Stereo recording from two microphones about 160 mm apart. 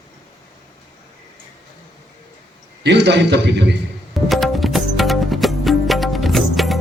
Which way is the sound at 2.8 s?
90° right.